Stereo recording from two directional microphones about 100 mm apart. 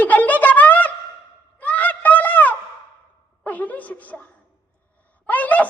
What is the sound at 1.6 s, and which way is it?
Honk, 15° left (ahead or behind).